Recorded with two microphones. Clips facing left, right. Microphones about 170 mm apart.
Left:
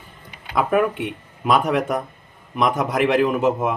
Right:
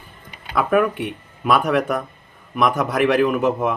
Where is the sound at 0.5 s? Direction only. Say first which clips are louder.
Right 1 dB; 20° left (ahead or behind).